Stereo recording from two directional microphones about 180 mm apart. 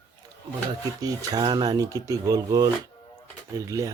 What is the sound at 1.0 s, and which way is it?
Speech, 20° right (ahead or behind).